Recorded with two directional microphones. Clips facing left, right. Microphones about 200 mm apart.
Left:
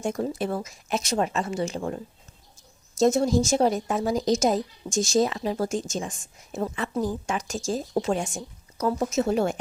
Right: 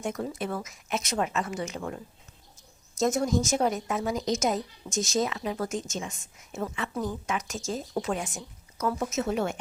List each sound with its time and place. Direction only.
0.0 s a woman's voice: 30° left (ahead or behind)
3.0 s a woman's voice: 30° left (ahead or behind)